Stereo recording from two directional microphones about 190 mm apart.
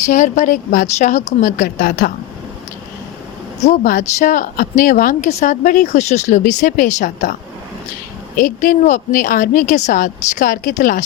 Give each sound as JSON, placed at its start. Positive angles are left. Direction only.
{"t": 0.0, "sound": "speech", "side_deg": 40}
{"t": 3.6, "sound": "speech", "side_deg": 40}
{"t": 8.4, "sound": "speech", "side_deg": 45}